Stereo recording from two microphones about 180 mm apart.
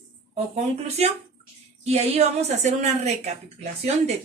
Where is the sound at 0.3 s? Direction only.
35° right (ahead or behind).